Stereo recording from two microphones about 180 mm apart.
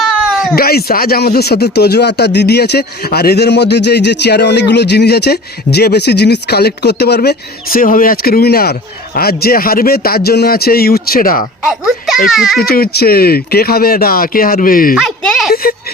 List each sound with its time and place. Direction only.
0.5 s speech: 60° left (ahead or behind)
11.6 s a child's voice: centre (ahead or behind)
12.5 s speech: 55° left (ahead or behind)
14.9 s a sound: centre (ahead or behind)